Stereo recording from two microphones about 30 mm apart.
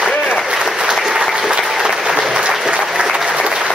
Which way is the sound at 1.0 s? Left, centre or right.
Centre.